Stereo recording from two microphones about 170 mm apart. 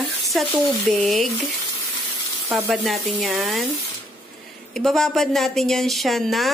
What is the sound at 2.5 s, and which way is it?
A woman's voice, centre (ahead or behind).